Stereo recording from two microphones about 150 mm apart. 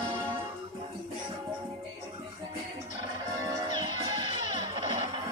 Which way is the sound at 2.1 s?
35° right (ahead or behind).